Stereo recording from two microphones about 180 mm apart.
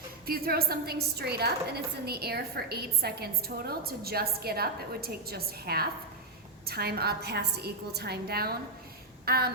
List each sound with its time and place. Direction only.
0.3 s a woman's voice: 55° right (ahead or behind)